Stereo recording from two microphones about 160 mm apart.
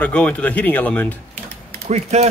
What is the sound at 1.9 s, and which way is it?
Speech, 45° right (ahead or behind).